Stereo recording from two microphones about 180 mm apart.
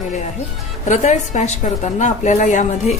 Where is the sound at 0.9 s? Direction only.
45° left (ahead or behind).